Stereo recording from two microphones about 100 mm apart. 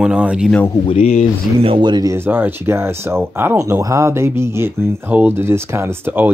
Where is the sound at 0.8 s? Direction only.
85° left.